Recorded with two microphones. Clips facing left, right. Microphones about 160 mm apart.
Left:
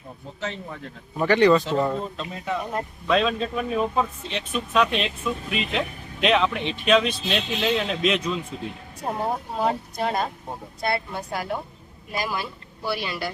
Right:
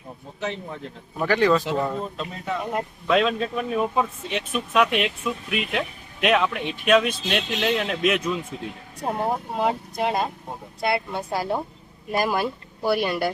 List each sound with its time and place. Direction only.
0.3 s speech: 15° right (ahead or behind)
1.1 s speech: centre (ahead or behind)
9.0 s speech: 15° right (ahead or behind)
11.1 s a woman's voice: 25° right (ahead or behind)
12.1 s speech: 50° right (ahead or behind)